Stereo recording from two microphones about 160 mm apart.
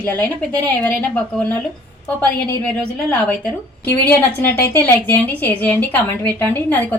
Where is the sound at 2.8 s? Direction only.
10° left (ahead or behind).